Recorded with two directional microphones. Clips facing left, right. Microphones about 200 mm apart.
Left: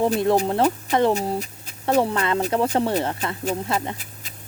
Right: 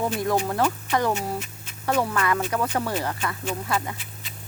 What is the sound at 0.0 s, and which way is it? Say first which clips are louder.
Speech: left 5 dB; 25° left (ahead or behind).